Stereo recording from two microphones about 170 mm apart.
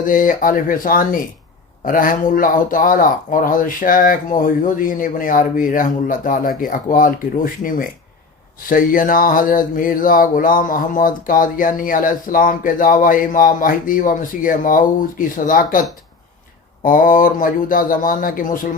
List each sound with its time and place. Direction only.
0.0 s speech: 50° left (ahead or behind)
16.8 s speech: 55° left (ahead or behind)